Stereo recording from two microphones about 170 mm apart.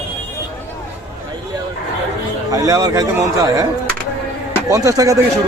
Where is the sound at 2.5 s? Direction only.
20° right (ahead or behind).